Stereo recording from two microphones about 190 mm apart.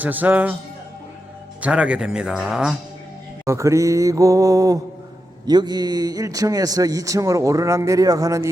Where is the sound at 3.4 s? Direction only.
15° right (ahead or behind).